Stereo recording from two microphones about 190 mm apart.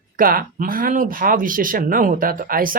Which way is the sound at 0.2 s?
50° right (ahead or behind).